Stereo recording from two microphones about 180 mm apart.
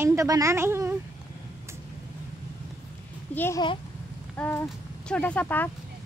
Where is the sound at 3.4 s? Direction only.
15° left (ahead or behind).